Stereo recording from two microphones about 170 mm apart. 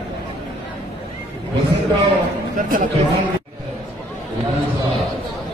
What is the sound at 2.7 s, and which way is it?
Speech, 55° right (ahead or behind).